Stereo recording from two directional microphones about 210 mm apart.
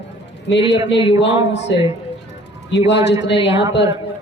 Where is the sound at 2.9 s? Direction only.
55° left (ahead or behind).